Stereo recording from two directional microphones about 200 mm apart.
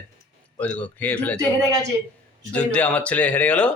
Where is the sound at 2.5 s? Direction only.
5° left (ahead or behind).